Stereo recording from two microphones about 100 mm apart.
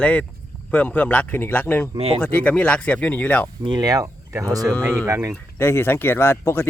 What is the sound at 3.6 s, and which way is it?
Speech, 45° right (ahead or behind).